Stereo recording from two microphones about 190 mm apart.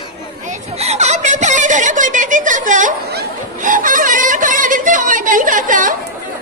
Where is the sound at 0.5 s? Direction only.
35° right (ahead or behind).